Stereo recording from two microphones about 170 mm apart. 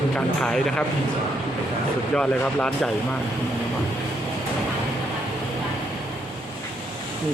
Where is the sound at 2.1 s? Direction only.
5° left (ahead or behind).